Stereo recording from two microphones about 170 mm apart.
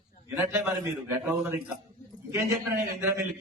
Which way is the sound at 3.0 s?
15° right (ahead or behind).